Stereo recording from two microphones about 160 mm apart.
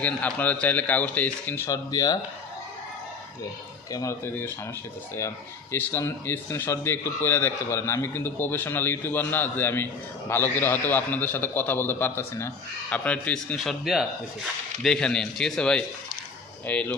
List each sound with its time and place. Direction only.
0.0 s a man's voice: 10° left (ahead or behind)
3.9 s a man's voice: 20° left (ahead or behind)
5.7 s a man's voice: 15° left (ahead or behind)